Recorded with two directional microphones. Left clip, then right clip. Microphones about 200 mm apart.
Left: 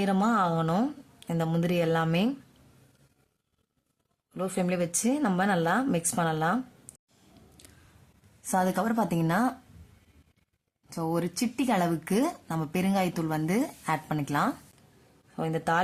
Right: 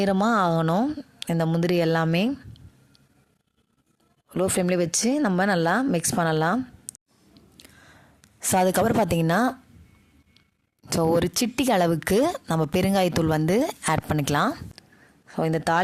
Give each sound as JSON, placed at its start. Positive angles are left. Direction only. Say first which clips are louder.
{"t": 0.0, "sound": "speech", "louder": "right 4 dB", "side_deg": -40}
{"t": 4.4, "sound": "speech", "louder": "right 6 dB", "side_deg": -40}
{"t": 7.3, "sound": "a sound", "louder": "right 5 dB", "side_deg": -30}
{"t": 8.4, "sound": "a woman's voice", "louder": "right 6 dB", "side_deg": -50}
{"t": 10.8, "sound": "a woman's voice", "louder": "right 9 dB", "side_deg": -45}